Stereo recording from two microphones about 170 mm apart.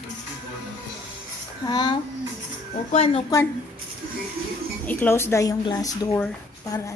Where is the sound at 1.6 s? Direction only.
25° left (ahead or behind).